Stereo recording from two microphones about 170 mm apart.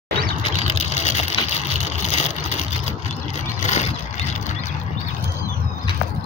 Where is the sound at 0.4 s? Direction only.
35° left (ahead or behind).